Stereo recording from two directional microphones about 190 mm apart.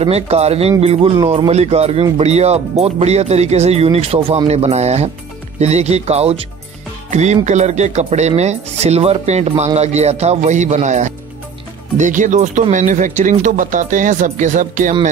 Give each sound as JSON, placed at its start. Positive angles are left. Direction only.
{"t": 0.0, "sound": "speech", "side_deg": -35}